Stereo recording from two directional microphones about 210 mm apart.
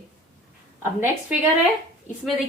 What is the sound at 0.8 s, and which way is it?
Speech, 10° right (ahead or behind).